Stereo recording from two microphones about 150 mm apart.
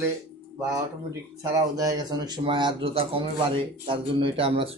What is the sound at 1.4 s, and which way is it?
Speech, 25° right (ahead or behind).